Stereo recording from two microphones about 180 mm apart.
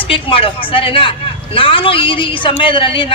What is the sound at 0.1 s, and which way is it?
A woman's voice, 30° left (ahead or behind).